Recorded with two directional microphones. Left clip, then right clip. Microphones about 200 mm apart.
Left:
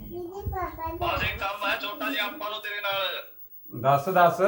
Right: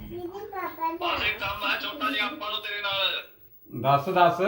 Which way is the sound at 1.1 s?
15° left (ahead or behind).